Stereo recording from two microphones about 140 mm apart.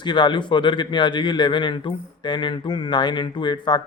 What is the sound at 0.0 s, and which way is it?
Speech, 35° left (ahead or behind).